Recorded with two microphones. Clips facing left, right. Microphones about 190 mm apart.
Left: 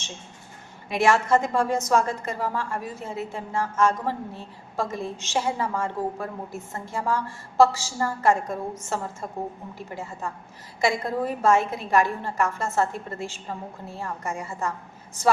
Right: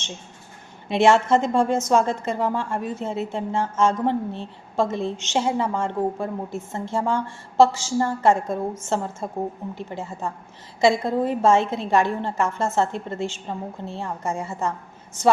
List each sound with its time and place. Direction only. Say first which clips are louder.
0.9 s a woman's voice: right 4 dB; 25° right (ahead or behind)